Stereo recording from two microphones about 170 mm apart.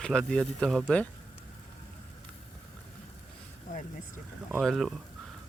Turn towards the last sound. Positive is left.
turn(degrees=0)  # may be behind; listen again after turning